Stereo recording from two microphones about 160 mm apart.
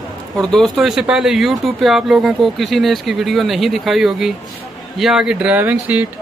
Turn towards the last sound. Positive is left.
turn(degrees=-10)  # may be behind; listen again after turning